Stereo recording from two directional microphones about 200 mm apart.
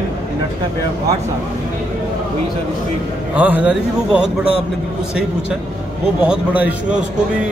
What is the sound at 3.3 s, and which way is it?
A man's voice, 5° right (ahead or behind).